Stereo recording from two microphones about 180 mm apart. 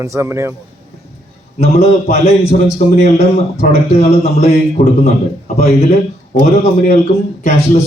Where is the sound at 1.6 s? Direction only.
35° left (ahead or behind).